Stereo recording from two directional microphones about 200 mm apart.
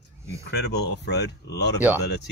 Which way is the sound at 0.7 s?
55° left (ahead or behind).